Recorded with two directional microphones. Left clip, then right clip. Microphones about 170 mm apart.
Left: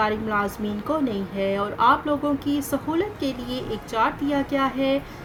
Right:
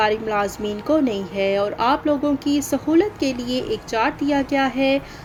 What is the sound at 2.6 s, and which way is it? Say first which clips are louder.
A woman's voice: right 6 dB; 25° right (ahead or behind).